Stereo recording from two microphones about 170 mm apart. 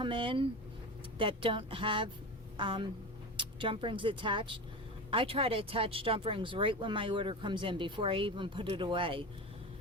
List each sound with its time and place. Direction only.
0.0 s speech: 30° right (ahead or behind)